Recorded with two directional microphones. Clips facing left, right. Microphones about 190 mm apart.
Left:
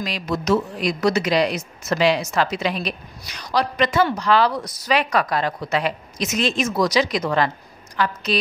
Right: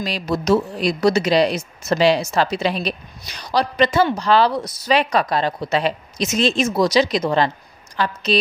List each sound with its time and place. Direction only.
0.0 s speech: 35° right (ahead or behind)